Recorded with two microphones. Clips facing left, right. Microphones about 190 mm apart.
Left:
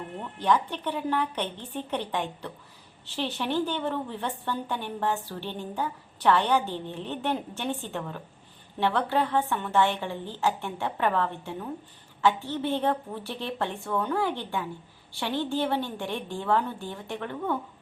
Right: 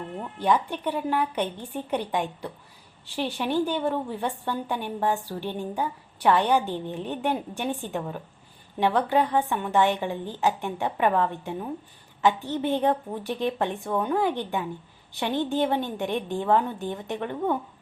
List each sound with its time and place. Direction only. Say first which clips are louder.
0.3 s a woman's voice: right 1 dB; 10° right (ahead or behind)